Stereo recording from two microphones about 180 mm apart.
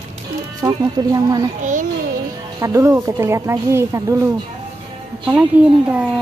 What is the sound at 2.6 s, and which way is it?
Speech, 15° right (ahead or behind).